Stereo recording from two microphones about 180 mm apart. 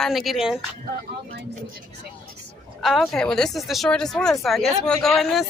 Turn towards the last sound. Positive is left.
turn(degrees=0)  # may be behind; listen again after turning